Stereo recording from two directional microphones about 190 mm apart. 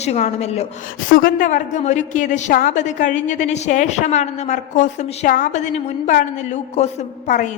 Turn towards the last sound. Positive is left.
turn(degrees=40)  # may be behind; listen again after turning